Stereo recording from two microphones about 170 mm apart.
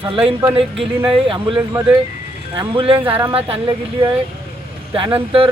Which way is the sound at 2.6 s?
30° right (ahead or behind).